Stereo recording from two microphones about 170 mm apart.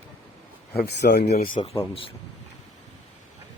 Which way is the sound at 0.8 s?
75° left (ahead or behind).